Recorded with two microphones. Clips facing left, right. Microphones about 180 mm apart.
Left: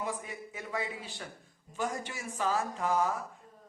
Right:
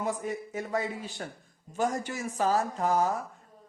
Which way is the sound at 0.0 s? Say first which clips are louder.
Right 6 dB; 45° right (ahead or behind).